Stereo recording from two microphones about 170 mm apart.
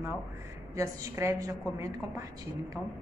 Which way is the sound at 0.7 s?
20° right (ahead or behind).